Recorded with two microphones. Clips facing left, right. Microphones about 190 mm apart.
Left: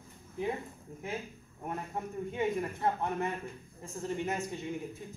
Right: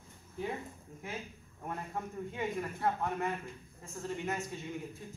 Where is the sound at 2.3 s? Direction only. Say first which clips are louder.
Left 5 dB; 25° left (ahead or behind).